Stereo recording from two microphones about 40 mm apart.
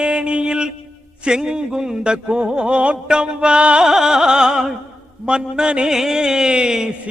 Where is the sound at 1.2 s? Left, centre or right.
Centre.